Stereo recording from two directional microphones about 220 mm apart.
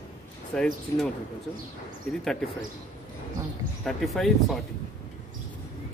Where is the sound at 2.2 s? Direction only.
Centre (ahead or behind).